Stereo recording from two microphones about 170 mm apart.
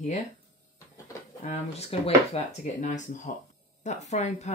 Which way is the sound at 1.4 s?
45° left (ahead or behind).